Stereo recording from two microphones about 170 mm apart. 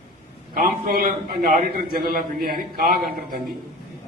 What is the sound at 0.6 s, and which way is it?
A man's voice, 55° right (ahead or behind).